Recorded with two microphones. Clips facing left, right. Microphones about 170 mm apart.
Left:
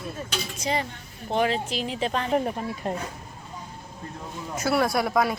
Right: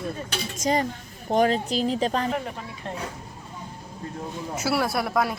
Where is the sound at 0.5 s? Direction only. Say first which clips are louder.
Right 5 dB; 45° right (ahead or behind).